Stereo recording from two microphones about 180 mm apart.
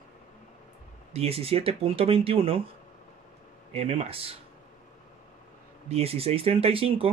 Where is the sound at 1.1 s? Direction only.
35° right (ahead or behind).